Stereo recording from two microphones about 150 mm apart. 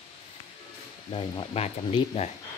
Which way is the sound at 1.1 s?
40° left (ahead or behind).